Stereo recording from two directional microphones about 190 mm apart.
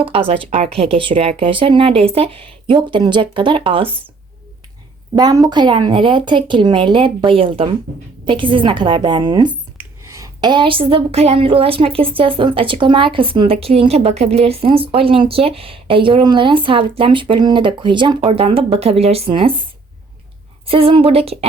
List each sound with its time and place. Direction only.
0.0 s a woman's voice: 30° right (ahead or behind)
5.1 s a woman's voice: 20° right (ahead or behind)
20.7 s a woman's voice: 30° right (ahead or behind)